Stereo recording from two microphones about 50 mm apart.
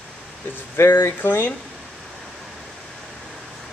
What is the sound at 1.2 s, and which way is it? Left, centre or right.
Speech, left.